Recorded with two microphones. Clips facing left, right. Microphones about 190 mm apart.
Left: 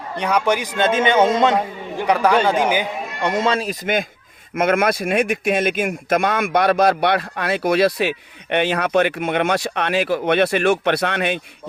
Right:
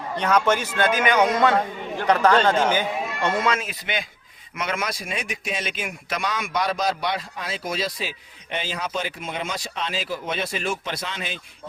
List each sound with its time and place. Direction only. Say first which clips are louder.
0.2 s a man's voice: left 2 dB; 10° left (ahead or behind)
3.4 s speech: left 5 dB; 35° left (ahead or behind); by 11.3 s 65° left (ahead or behind)